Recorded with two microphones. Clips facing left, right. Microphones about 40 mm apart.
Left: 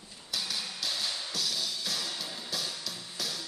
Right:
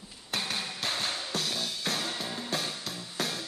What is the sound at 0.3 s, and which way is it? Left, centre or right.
Music, right.